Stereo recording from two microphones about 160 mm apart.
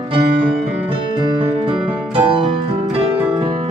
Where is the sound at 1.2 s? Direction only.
35° right (ahead or behind).